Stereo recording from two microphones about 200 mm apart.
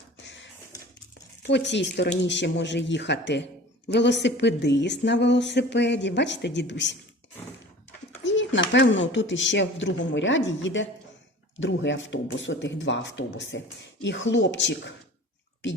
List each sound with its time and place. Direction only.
0.2 s typewriter: 65° left (ahead or behind)
1.4 s speech: 60° left (ahead or behind)
8.2 s speech: 65° left (ahead or behind)